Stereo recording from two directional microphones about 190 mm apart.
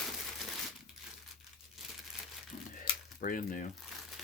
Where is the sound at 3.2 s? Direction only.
45° left (ahead or behind).